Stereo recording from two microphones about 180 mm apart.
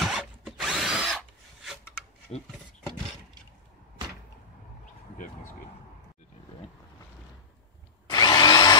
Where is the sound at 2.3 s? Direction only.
35° left (ahead or behind).